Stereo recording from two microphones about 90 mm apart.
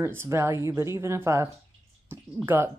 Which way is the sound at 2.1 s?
25° right (ahead or behind).